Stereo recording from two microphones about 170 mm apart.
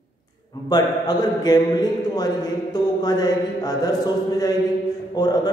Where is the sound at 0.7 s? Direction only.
25° left (ahead or behind).